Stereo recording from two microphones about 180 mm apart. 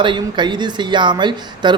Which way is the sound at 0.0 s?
25° right (ahead or behind).